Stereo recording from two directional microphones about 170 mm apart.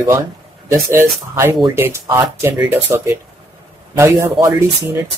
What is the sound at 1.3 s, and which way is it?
Speech, 15° right (ahead or behind).